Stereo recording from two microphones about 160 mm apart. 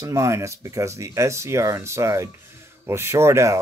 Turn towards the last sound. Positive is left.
turn(degrees=-15)  # may be behind; listen again after turning